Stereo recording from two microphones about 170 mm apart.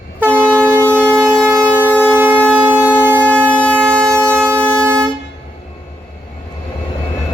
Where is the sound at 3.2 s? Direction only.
5° left (ahead or behind).